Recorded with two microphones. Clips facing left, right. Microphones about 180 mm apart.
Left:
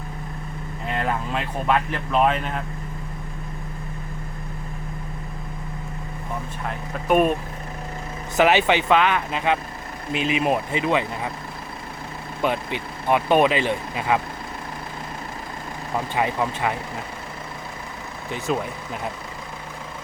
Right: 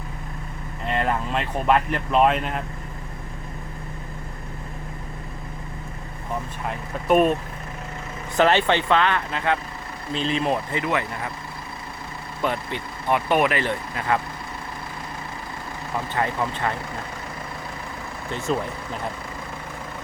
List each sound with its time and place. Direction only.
0.9 s speech: centre (ahead or behind)
6.7 s speech: centre (ahead or behind)
8.4 s speech: 10° left (ahead or behind)
12.4 s speech: 15° left (ahead or behind)
16.1 s speech: 15° left (ahead or behind)
18.3 s speech: centre (ahead or behind)